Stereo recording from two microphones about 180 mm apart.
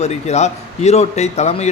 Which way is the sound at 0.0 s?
35° left (ahead or behind).